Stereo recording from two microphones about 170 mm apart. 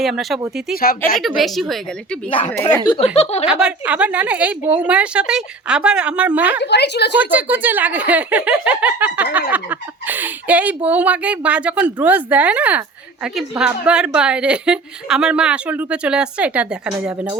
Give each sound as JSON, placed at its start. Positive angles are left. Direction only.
{"t": 0.0, "sound": "a woman's voice", "side_deg": 0}
{"t": 0.8, "sound": "a woman's voice", "side_deg": 60}
{"t": 1.4, "sound": "a woman's voice", "side_deg": 0}
{"t": 2.5, "sound": "speech", "side_deg": 10}
{"t": 2.8, "sound": "speech", "side_deg": 30}
{"t": 3.2, "sound": "speech", "side_deg": 40}
{"t": 3.4, "sound": "a woman's voice", "side_deg": -5}
{"t": 6.6, "sound": "a woman's voice", "side_deg": 85}
{"t": 7.2, "sound": "a woman's voice", "side_deg": -10}